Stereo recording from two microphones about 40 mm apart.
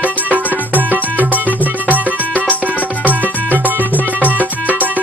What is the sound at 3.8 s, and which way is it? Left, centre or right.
Music, right.